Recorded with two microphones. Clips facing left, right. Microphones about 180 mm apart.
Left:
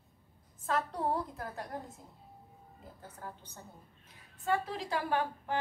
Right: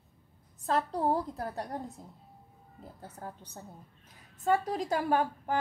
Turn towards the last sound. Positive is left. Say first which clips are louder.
# right 4 dB
turn(degrees=-45)  # may be behind; listen again after turning